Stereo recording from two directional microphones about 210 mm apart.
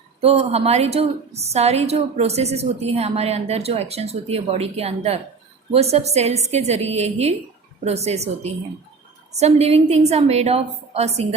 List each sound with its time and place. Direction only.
0.2 s a woman's voice: 30° right (ahead or behind)